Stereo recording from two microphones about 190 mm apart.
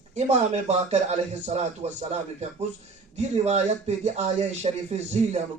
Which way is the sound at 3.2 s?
35° right (ahead or behind).